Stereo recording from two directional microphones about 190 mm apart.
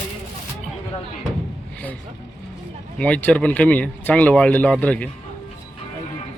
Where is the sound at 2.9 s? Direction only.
5° left (ahead or behind).